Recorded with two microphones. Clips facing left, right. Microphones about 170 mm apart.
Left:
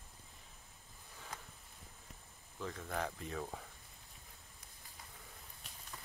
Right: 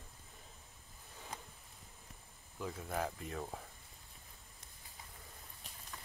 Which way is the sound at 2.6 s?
10° right (ahead or behind).